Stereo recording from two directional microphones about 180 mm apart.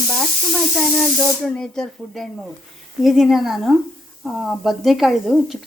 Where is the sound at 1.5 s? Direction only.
5° left (ahead or behind).